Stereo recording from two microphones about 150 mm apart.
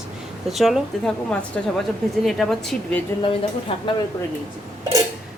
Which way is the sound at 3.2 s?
35° left (ahead or behind).